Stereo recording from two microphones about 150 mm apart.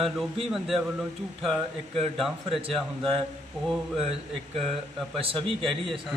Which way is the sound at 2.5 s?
40° right (ahead or behind).